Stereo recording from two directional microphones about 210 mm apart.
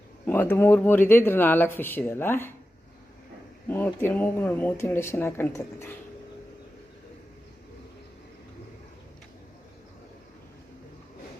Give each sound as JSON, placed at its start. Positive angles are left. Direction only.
{"t": 0.3, "sound": "speech", "side_deg": 10}
{"t": 3.7, "sound": "speech", "side_deg": 10}